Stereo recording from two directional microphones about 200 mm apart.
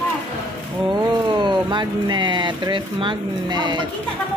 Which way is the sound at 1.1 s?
20° right (ahead or behind).